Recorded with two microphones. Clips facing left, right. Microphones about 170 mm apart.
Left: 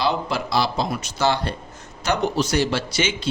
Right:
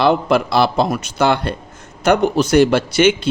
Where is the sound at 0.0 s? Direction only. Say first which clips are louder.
Right 8 dB; 60° right (ahead or behind).